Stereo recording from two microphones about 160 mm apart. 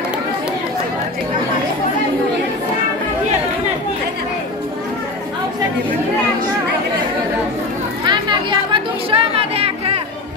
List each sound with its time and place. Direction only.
8.1 s chatter: 30° right (ahead or behind)